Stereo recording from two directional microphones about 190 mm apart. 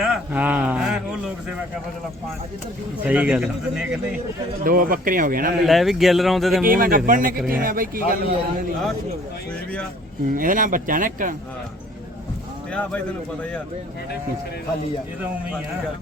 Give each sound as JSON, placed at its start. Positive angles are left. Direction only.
{"t": 0.0, "sound": "speech", "side_deg": -5}
{"t": 3.0, "sound": "speech", "side_deg": -10}
{"t": 4.6, "sound": "speech", "side_deg": -50}
{"t": 5.6, "sound": "speech", "side_deg": 0}
{"t": 6.7, "sound": "speech", "side_deg": -50}
{"t": 10.3, "sound": "speech", "side_deg": -45}
{"t": 12.7, "sound": "a man's voice", "side_deg": 5}